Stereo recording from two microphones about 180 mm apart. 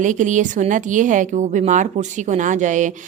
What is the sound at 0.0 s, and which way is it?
Speech, 45° right (ahead or behind).